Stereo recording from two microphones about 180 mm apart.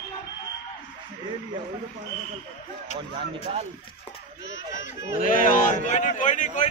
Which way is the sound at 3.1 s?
35° right (ahead or behind).